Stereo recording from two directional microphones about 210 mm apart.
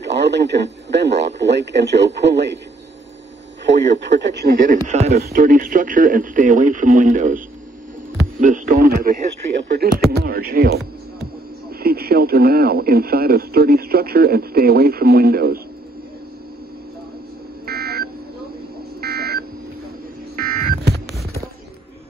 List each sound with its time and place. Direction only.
0.0 s speech: 55° right (ahead or behind)
3.6 s speech: 55° right (ahead or behind)
4.9 s speech: 30° right (ahead or behind)
5.2 s speech: 40° right (ahead or behind)
11.8 s speech: 45° right (ahead or behind)
17.6 s buzzer: 45° right (ahead or behind)
18.9 s a sound: 45° right (ahead or behind)